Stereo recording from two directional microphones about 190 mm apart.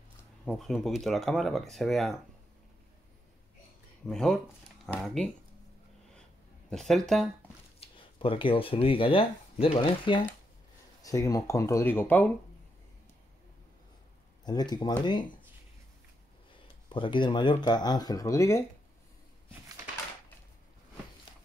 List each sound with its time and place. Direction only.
0.5 s speech: centre (ahead or behind)
4.0 s speech: centre (ahead or behind)
6.7 s speech: centre (ahead or behind)
7.8 s speech: 30° left (ahead or behind); by 12.3 s 10° left (ahead or behind)
14.4 s speech: 20° left (ahead or behind)
16.9 s speech: 25° left (ahead or behind)